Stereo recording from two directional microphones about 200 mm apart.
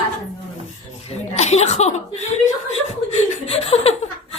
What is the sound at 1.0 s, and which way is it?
Speech, 35° left (ahead or behind).